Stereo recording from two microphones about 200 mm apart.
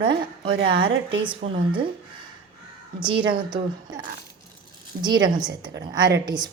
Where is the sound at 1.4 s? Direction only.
45° right (ahead or behind).